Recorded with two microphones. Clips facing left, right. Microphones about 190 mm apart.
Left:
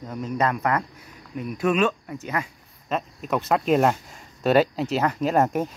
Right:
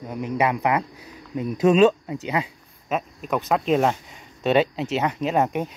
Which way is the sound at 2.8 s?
5° right (ahead or behind).